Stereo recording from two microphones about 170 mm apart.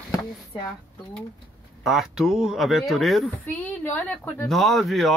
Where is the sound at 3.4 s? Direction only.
10° left (ahead or behind).